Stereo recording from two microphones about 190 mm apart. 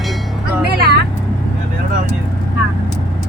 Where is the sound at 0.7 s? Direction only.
55° right (ahead or behind).